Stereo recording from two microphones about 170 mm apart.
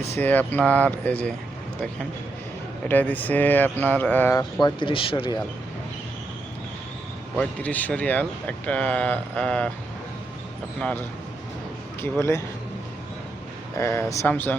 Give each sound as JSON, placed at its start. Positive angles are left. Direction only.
{"t": 0.1, "sound": "speech", "side_deg": 10}
{"t": 2.9, "sound": "speech", "side_deg": 10}
{"t": 4.6, "sound": "speech", "side_deg": 30}
{"t": 7.3, "sound": "speech", "side_deg": 10}
{"t": 10.8, "sound": "speech", "side_deg": 5}
{"t": 12.0, "sound": "speech", "side_deg": 15}
{"t": 13.7, "sound": "speech", "side_deg": 15}